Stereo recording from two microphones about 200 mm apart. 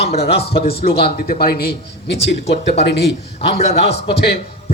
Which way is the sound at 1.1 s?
50° left (ahead or behind).